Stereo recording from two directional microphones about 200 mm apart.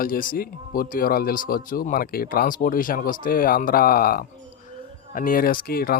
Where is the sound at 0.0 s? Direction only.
45° left (ahead or behind).